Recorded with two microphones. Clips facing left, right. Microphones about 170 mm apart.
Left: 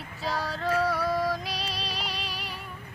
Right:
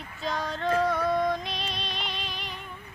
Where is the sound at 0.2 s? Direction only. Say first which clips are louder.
Right 1 dB; 5° left (ahead or behind).